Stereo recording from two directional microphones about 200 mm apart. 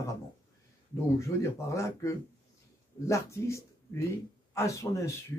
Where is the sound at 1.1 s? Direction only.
15° left (ahead or behind).